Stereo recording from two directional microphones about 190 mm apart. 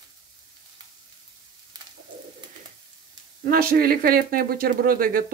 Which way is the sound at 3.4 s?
50° right (ahead or behind).